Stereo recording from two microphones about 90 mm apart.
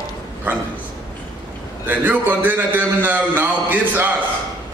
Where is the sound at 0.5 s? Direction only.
20° right (ahead or behind).